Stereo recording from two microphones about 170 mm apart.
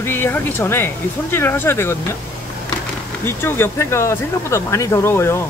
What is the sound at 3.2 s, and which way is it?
Speech, 15° left (ahead or behind).